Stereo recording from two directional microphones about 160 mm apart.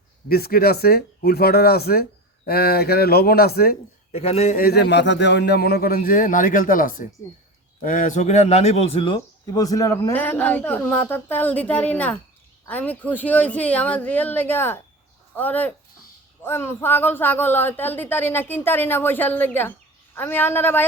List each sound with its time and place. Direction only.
0.3 s a man's voice: 70° left (ahead or behind)
4.1 s speech: 40° left (ahead or behind)
4.5 s a man's voice: 75° left (ahead or behind); by 20.8 s 15° left (ahead or behind)